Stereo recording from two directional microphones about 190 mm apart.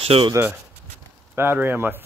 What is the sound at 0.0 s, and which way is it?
Speech, 30° right (ahead or behind).